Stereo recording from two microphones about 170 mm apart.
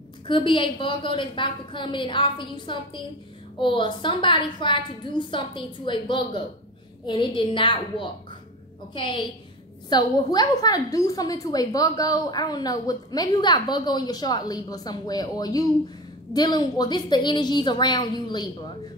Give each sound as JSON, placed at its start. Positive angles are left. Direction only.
{"t": 0.3, "sound": "a woman's voice", "side_deg": 30}